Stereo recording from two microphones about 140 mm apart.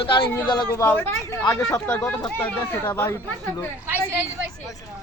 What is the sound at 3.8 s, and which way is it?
Speech, 15° right (ahead or behind).